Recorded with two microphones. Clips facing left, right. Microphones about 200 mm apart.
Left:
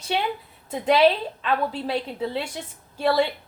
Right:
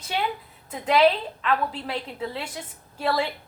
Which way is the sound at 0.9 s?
30° left (ahead or behind).